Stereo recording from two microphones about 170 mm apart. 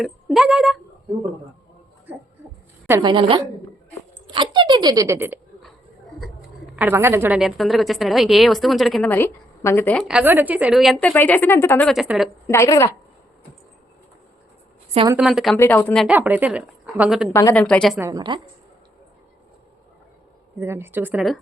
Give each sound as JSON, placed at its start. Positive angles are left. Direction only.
{"t": 0.0, "sound": "speech", "side_deg": 0}
{"t": 3.0, "sound": "speech", "side_deg": -30}
{"t": 6.7, "sound": "a woman's voice", "side_deg": -15}
{"t": 9.0, "sound": "a woman's voice", "side_deg": 10}
{"t": 10.1, "sound": "a woman's voice", "side_deg": -10}
{"t": 11.9, "sound": "a woman's voice", "side_deg": 0}
{"t": 12.5, "sound": "a woman's voice", "side_deg": 20}
{"t": 15.1, "sound": "a woman's voice", "side_deg": -5}
{"t": 15.5, "sound": "a woman's voice", "side_deg": 15}
{"t": 16.0, "sound": "a woman's voice", "side_deg": -10}
{"t": 17.3, "sound": "a woman's voice", "side_deg": 10}
{"t": 18.1, "sound": "speech", "side_deg": -25}
{"t": 20.6, "sound": "a woman's voice", "side_deg": -15}